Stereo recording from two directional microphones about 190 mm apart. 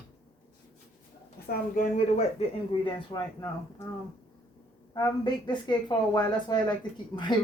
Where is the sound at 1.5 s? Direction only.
50° left (ahead or behind).